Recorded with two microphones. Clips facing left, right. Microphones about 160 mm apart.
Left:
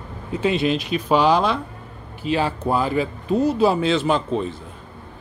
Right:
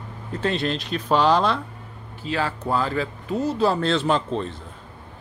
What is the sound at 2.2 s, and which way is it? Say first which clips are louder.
Speech: left 4 dB; 20° left (ahead or behind).